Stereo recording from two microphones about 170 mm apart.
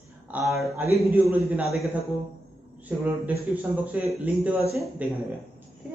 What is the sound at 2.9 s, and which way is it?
Speech, 10° right (ahead or behind).